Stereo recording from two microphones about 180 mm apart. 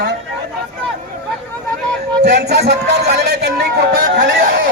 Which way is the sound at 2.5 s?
65° right (ahead or behind).